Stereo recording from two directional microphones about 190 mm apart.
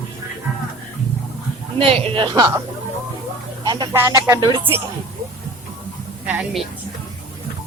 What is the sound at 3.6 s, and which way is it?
Speech, 20° right (ahead or behind).